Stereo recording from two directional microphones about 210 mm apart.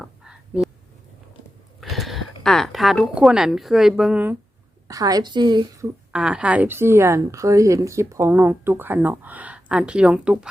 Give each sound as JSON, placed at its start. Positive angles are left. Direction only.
{"t": 0.0, "sound": "a sound", "side_deg": 0}
{"t": 1.8, "sound": "a woman's voice", "side_deg": 0}
{"t": 6.1, "sound": "a woman's voice", "side_deg": -5}